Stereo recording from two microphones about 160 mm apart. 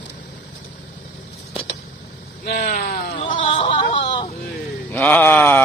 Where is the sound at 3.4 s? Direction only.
35° left (ahead or behind).